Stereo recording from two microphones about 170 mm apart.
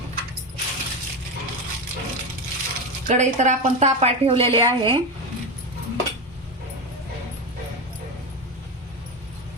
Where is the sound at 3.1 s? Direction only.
45° right (ahead or behind).